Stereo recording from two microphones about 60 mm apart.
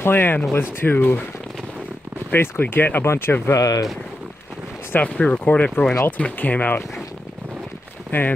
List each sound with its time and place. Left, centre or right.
0.0 s speech: left
2.3 s speech: left
3.5 s speech: left
5.0 s speech: left
8.1 s speech: left